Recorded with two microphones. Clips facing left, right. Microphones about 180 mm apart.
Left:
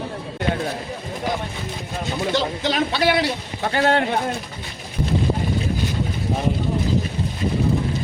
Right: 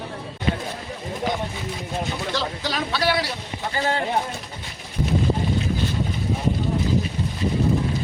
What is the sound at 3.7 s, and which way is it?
Speech, 70° left (ahead or behind).